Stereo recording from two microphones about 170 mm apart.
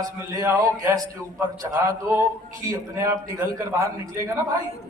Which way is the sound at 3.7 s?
15° right (ahead or behind).